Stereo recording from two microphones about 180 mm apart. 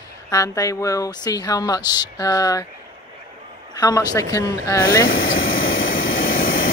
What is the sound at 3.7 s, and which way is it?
A man's voice, 20° left (ahead or behind).